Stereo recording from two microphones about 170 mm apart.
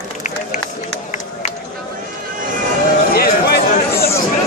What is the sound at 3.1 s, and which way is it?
Chatter, 65° left (ahead or behind).